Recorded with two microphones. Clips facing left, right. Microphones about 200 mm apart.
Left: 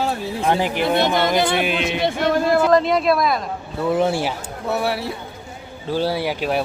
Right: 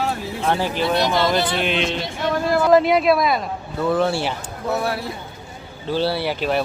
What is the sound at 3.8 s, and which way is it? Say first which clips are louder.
Speech: left 1 dB; 15° left (ahead or behind).